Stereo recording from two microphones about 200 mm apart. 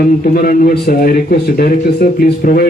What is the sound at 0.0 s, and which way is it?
A man's voice, 45° left (ahead or behind).